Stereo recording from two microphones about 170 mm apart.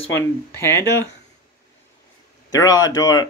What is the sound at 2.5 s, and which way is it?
Speech, 20° left (ahead or behind).